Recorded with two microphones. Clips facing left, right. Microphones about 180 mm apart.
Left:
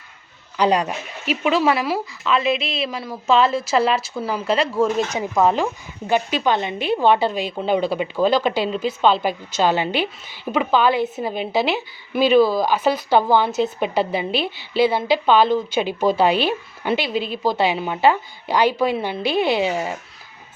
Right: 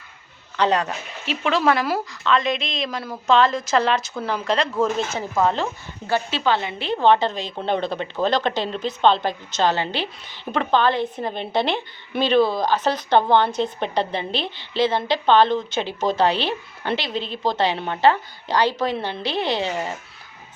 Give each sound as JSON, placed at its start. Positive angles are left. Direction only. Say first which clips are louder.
{"t": 0.5, "sound": "a woman's voice", "louder": "left 2 dB", "side_deg": 10}
{"t": 5.0, "sound": "a woman's voice", "louder": "left 3 dB", "side_deg": 15}